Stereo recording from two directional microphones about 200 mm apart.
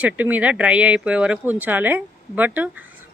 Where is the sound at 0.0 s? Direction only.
5° right (ahead or behind).